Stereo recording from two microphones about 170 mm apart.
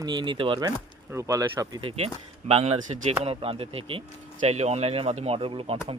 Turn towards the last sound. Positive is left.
turn(degrees=-30)  # may be behind; listen again after turning